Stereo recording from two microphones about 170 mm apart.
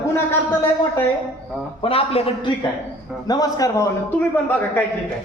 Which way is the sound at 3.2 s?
20° left (ahead or behind).